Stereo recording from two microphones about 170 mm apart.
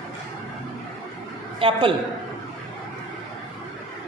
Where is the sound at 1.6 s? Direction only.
30° right (ahead or behind).